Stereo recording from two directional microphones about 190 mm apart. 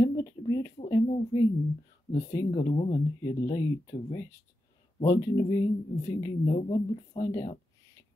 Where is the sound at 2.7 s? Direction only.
25° left (ahead or behind).